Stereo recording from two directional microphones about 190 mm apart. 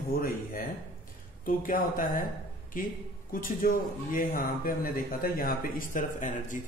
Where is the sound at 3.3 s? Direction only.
45° left (ahead or behind).